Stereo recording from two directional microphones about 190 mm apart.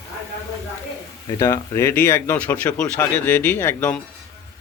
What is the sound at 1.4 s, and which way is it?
A man's voice, 15° left (ahead or behind).